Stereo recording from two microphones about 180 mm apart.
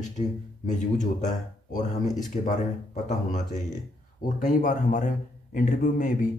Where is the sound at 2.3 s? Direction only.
40° left (ahead or behind).